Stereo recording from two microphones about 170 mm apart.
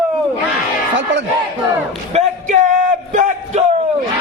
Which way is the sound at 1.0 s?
90° right.